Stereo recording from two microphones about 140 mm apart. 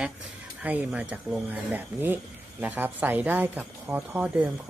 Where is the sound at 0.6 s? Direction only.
10° right (ahead or behind).